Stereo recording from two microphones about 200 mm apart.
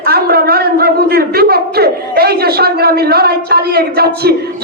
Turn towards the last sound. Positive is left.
turn(degrees=-50)  # may be behind; listen again after turning